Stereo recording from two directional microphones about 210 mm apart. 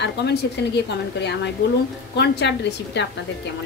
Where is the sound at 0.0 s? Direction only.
55° left (ahead or behind).